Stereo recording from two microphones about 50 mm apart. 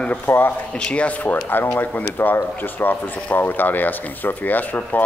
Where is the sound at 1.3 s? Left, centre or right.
Left.